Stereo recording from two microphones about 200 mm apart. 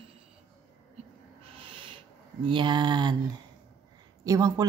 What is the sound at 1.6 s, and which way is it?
Snort, 25° right (ahead or behind).